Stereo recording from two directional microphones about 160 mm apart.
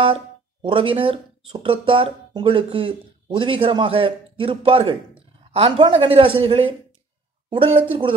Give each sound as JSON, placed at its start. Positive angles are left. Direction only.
{"t": 0.0, "sound": "speech", "side_deg": -35}